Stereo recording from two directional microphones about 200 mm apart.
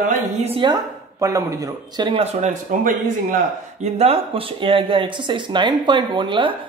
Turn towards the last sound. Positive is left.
turn(degrees=-25)  # may be behind; listen again after turning